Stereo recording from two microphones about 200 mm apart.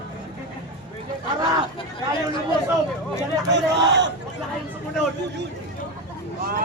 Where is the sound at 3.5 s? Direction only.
60° right (ahead or behind).